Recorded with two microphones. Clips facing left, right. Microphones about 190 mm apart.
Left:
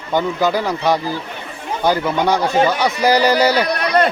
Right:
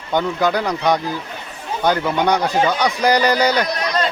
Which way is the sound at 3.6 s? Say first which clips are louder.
Left 5 dB; 60° left (ahead or behind).